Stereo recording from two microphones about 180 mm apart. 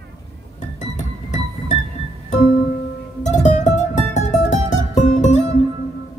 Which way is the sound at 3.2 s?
40° left (ahead or behind).